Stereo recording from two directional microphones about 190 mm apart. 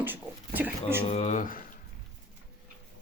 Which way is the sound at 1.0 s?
35° left (ahead or behind).